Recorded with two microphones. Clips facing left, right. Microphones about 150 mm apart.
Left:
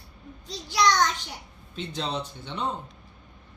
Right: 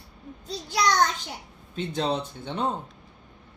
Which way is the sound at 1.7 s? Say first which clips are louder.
Right 4 dB; 50° right (ahead or behind).